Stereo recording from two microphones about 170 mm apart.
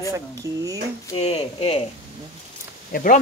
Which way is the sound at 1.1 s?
35° left (ahead or behind).